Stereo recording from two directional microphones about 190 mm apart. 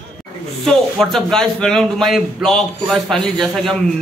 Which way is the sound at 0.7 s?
Centre (ahead or behind).